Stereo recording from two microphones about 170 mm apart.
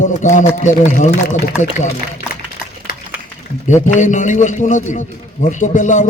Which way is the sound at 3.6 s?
45° left (ahead or behind).